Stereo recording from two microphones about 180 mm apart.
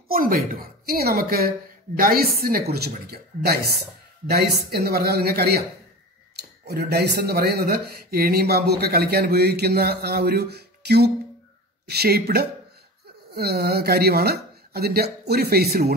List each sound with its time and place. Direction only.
0.1 s speech: 50° right (ahead or behind)